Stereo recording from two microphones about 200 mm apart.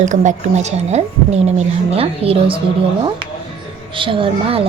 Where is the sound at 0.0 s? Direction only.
40° right (ahead or behind).